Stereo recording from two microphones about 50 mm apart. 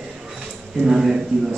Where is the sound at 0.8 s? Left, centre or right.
Centre.